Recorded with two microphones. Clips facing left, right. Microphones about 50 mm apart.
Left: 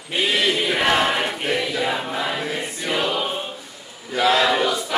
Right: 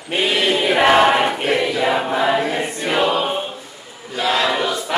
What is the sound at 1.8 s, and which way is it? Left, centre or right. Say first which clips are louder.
Choir: right 6 dB; right.